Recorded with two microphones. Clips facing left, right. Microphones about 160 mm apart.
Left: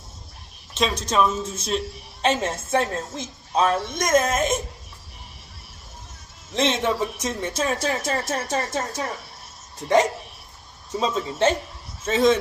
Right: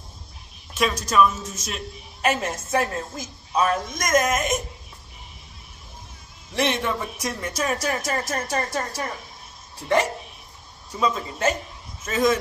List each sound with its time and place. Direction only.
0.7 s a woman's voice: 25° left (ahead or behind)
6.5 s a woman's voice: 20° left (ahead or behind)
10.9 s a woman's voice: 25° left (ahead or behind)